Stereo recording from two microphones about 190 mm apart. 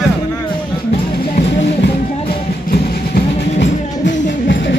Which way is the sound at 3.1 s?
65° left (ahead or behind).